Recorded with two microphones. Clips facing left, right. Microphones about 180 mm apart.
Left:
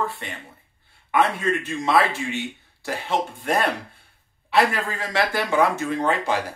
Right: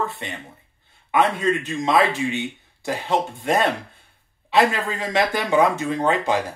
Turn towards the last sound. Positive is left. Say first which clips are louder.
# right 2 dB
turn(degrees=-20)  # may be behind; listen again after turning